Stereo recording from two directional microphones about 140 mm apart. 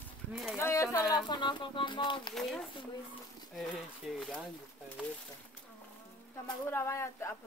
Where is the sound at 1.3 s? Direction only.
35° left (ahead or behind).